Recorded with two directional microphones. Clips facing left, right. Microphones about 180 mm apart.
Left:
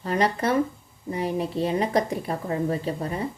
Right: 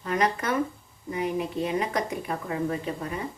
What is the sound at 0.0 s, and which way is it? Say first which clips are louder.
Speech: left 3 dB; 35° left (ahead or behind).